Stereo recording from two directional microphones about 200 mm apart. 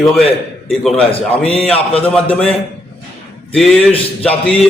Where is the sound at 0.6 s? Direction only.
Centre (ahead or behind).